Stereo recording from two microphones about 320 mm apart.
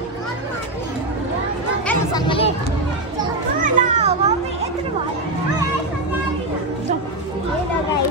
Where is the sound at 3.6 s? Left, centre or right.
Right.